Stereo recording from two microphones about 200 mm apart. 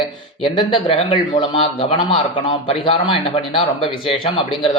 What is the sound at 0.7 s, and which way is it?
A man's voice, 25° left (ahead or behind).